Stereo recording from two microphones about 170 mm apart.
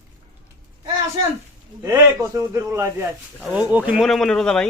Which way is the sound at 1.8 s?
20° right (ahead or behind).